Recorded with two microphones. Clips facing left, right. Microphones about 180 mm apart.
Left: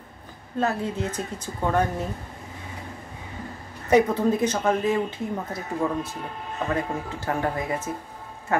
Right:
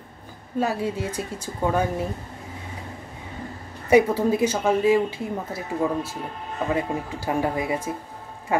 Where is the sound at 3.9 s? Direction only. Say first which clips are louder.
Right 2 dB; 10° right (ahead or behind).